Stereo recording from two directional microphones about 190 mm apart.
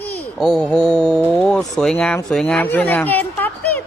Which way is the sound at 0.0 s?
5° left (ahead or behind).